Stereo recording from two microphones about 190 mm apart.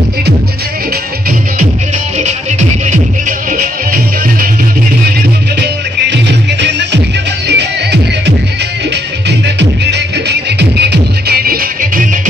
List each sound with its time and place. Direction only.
3.3 s music: 45° right (ahead or behind)
5.6 s music: 65° right (ahead or behind)
9.6 s music: 65° right (ahead or behind)